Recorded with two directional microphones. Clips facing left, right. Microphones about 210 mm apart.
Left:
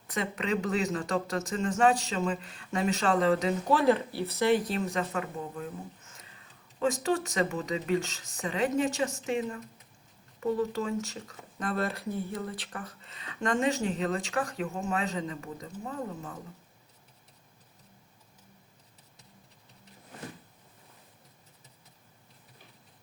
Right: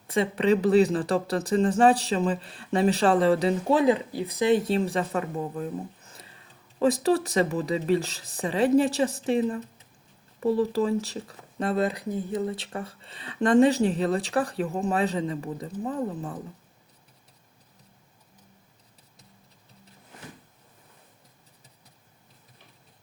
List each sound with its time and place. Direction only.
0.1 s speech: 30° right (ahead or behind)